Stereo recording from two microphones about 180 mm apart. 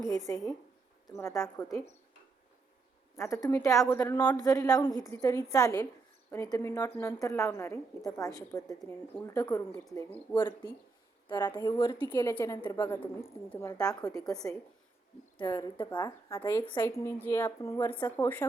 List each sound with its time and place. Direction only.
1.0 s a woman's voice: 15° left (ahead or behind)
3.2 s a woman's voice: 15° left (ahead or behind)
12.3 s a woman's voice: 10° left (ahead or behind)
14.2 s a woman's voice: centre (ahead or behind)
15.5 s speech: 25° left (ahead or behind)
16.7 s a woman's voice: 15° left (ahead or behind)